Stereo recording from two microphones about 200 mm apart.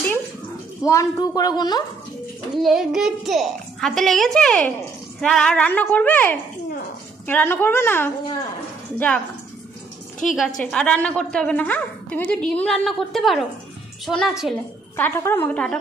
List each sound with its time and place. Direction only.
0.8 s a woman's voice: 15° left (ahead or behind)
2.5 s a child's voice: centre (ahead or behind)
10.6 s a child's voice: 5° left (ahead or behind)
15.0 s speech: 10° left (ahead or behind)